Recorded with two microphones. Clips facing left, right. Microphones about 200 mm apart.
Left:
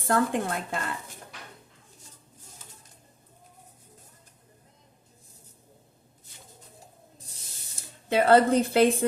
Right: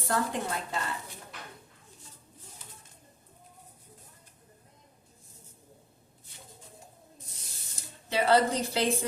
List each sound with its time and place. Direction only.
0.1 s a woman's voice: 55° left (ahead or behind)
8.1 s a woman's voice: 55° left (ahead or behind)